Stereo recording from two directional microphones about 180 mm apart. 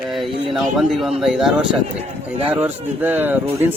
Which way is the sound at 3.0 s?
10° right (ahead or behind).